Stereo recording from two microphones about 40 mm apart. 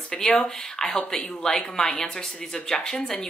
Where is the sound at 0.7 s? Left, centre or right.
Centre.